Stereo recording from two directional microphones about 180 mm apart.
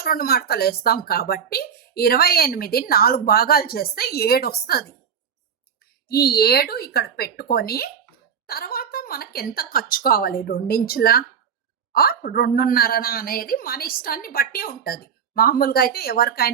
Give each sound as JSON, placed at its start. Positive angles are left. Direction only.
{"t": 0.0, "sound": "speech", "side_deg": 55}
{"t": 6.1, "sound": "speech", "side_deg": 60}